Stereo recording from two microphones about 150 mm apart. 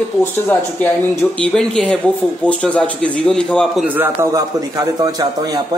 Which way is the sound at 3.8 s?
15° right (ahead or behind).